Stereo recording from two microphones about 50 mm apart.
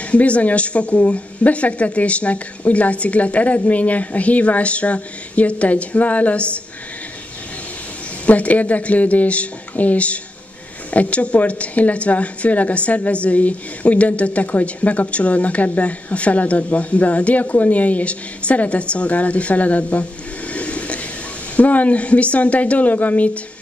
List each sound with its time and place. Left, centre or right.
0.1 s a woman's voice: left
8.3 s a woman's voice: left
20.5 s a sound: left
21.5 s a woman's voice: left